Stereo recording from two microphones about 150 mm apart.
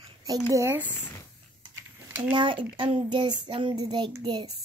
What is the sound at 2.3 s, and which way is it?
Speech, 35° right (ahead or behind).